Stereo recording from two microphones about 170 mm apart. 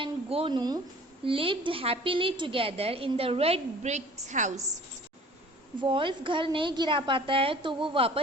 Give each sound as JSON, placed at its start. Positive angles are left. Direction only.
{"t": 0.0, "sound": "a sound", "side_deg": -35}
{"t": 1.2, "sound": "a woman's voice", "side_deg": -30}
{"t": 5.8, "sound": "a woman's voice", "side_deg": -30}